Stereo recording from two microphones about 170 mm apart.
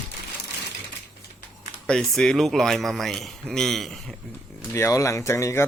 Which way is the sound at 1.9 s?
5° left (ahead or behind).